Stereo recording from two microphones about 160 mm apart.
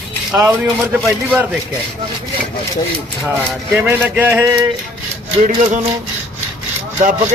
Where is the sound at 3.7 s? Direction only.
10° right (ahead or behind).